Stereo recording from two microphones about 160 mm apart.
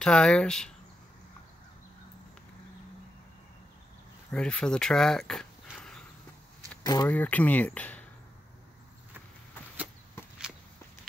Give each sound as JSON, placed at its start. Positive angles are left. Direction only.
{"t": 0.0, "sound": "speech", "side_deg": 5}
{"t": 4.3, "sound": "speech", "side_deg": 5}
{"t": 6.8, "sound": "a sound", "side_deg": 25}
{"t": 7.1, "sound": "speech", "side_deg": 10}